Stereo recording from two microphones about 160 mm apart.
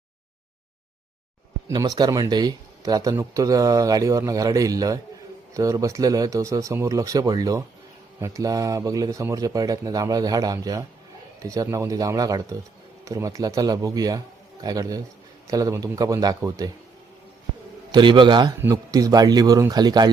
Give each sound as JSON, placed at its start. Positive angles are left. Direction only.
{"t": 1.6, "sound": "speech", "side_deg": -25}
{"t": 17.9, "sound": "speech", "side_deg": -30}